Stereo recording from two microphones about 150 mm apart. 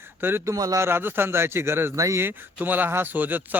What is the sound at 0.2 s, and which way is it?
A man's voice, 15° right (ahead or behind).